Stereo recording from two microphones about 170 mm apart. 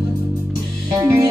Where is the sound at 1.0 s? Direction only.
20° right (ahead or behind).